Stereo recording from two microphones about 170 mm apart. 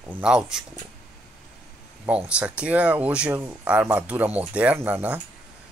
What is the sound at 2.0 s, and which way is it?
Speech, 5° right (ahead or behind).